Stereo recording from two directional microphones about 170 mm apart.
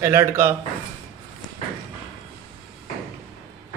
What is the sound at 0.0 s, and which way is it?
Speech, 15° right (ahead or behind).